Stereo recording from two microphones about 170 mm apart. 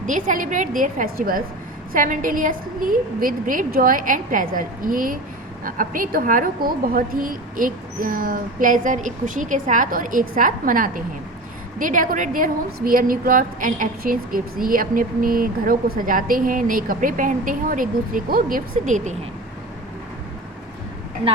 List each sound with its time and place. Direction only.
0.0 s a woman's voice: 50° right (ahead or behind)